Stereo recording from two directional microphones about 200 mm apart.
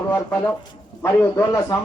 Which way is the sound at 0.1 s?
10° left (ahead or behind).